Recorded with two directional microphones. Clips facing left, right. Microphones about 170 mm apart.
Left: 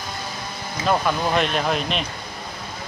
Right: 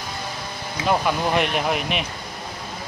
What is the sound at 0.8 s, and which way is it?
Speech, 15° right (ahead or behind).